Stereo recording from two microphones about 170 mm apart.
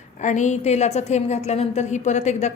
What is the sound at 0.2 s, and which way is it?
A woman's voice, 45° left (ahead or behind).